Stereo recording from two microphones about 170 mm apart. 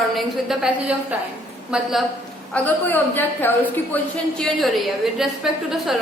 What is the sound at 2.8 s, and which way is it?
A woman's voice, 10° left (ahead or behind).